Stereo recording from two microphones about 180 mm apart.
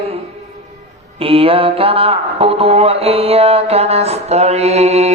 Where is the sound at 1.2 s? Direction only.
30° right (ahead or behind).